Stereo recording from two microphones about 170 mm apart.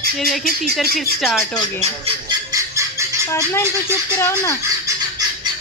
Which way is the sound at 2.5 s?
15° right (ahead or behind).